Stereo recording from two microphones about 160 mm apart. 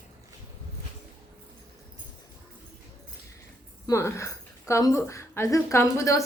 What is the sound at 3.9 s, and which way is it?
A woman's voice, 15° left (ahead or behind).